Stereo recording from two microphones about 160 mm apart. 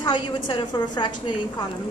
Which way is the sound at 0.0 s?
30° left (ahead or behind).